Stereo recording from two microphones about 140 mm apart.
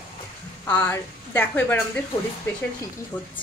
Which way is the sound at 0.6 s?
15° left (ahead or behind).